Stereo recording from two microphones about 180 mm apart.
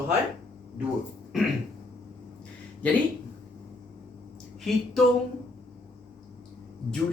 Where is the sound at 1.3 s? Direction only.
Centre (ahead or behind).